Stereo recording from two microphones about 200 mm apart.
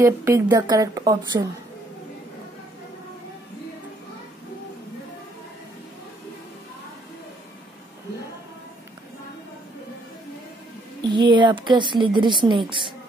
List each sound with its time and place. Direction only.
0.0 s a woman's voice: 15° right (ahead or behind)
11.1 s a woman's voice: 25° right (ahead or behind)